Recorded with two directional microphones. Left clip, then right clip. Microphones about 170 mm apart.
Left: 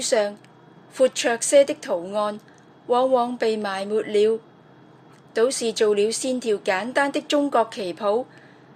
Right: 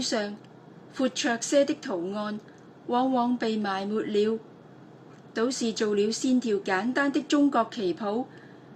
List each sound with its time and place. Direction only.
0.0 s a woman's voice: 40° left (ahead or behind)
5.3 s a woman's voice: 40° left (ahead or behind)